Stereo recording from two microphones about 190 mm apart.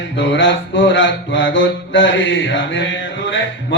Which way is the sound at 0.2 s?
75° left (ahead or behind).